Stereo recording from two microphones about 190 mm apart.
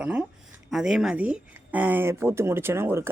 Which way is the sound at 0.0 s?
5° right (ahead or behind).